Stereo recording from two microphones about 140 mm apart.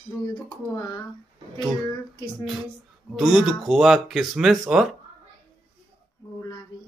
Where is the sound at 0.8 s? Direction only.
25° left (ahead or behind).